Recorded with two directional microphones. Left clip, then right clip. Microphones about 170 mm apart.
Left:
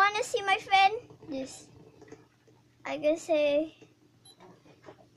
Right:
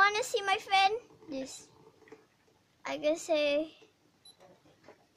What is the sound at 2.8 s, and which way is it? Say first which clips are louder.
Speech: left 3 dB; 20° right (ahead or behind).